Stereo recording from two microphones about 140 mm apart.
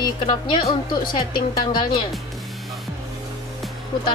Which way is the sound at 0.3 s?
30° left (ahead or behind).